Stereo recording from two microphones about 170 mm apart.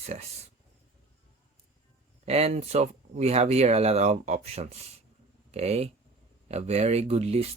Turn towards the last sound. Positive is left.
turn(degrees=-40)  # may be behind; listen again after turning